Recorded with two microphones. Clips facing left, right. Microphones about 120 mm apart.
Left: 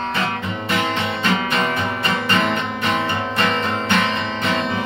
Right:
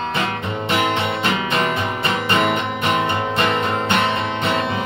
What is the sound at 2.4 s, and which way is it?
Music, 15° right (ahead or behind).